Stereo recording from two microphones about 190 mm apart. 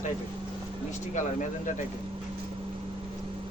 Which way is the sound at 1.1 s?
40° left (ahead or behind).